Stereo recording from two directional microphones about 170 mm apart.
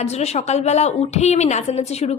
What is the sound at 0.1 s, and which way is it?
A woman's voice, 40° left (ahead or behind).